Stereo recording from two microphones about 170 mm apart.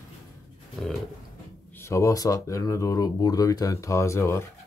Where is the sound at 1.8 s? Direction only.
15° left (ahead or behind).